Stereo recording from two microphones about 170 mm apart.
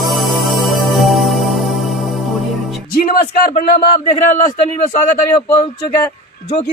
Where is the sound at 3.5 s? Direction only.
45° left (ahead or behind).